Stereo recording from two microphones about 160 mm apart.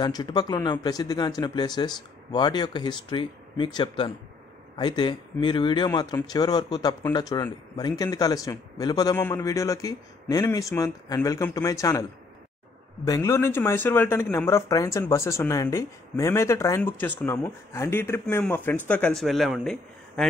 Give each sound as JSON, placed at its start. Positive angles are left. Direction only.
{"t": 0.0, "sound": "speech", "side_deg": 25}